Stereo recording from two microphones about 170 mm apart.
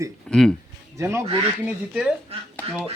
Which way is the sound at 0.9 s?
15° right (ahead or behind).